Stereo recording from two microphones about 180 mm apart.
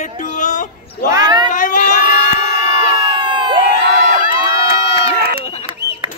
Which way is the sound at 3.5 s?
55° right (ahead or behind).